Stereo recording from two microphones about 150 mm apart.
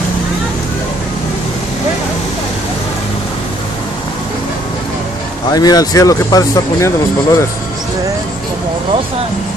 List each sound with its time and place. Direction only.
5.5 s speech: 25° left (ahead or behind)